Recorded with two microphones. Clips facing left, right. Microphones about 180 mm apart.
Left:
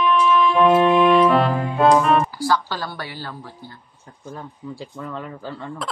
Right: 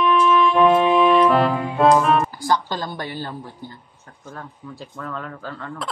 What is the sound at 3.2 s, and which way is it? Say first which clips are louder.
Speech: right 3 dB; 20° right (ahead or behind).